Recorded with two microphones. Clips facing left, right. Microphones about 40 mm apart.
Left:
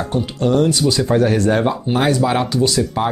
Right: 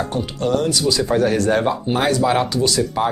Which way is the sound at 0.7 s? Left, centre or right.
Left.